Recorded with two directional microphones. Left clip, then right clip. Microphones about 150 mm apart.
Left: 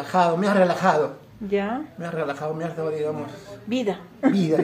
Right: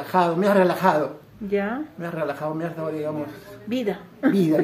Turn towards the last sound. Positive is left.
turn(degrees=-20)  # may be behind; listen again after turning